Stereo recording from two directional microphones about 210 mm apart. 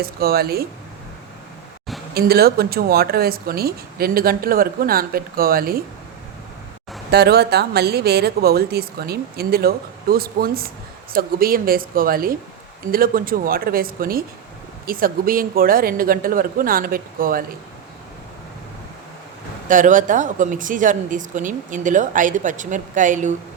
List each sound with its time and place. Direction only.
0.0 s speech: 45° right (ahead or behind)
2.1 s speech: 45° right (ahead or behind)
7.1 s speech: 50° right (ahead or behind)
19.6 s speech: 40° right (ahead or behind)